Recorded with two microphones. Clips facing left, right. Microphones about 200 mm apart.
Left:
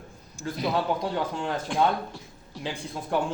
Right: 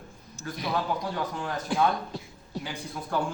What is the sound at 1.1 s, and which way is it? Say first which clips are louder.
Speech: left 3 dB; 25° left (ahead or behind).